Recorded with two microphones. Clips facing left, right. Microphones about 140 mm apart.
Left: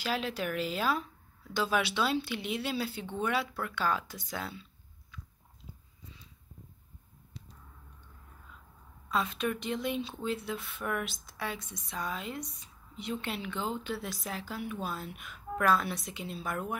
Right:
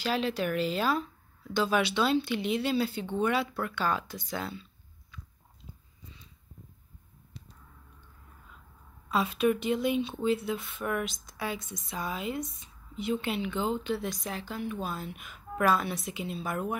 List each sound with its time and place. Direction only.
0.0 s speech: 5° left (ahead or behind)
9.1 s speech: 5° right (ahead or behind)